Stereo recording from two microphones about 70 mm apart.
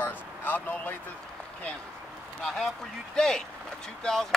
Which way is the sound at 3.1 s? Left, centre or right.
Centre.